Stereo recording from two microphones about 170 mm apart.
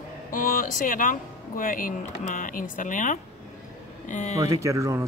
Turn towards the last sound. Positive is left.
turn(degrees=-20)  # may be behind; listen again after turning